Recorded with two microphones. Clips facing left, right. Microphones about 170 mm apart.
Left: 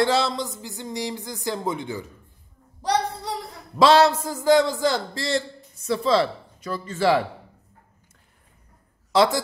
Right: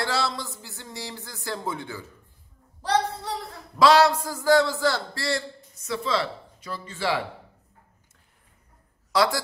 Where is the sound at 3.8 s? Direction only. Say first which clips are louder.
Left 2 dB; 25° left (ahead or behind); by 7.2 s 45° left (ahead or behind).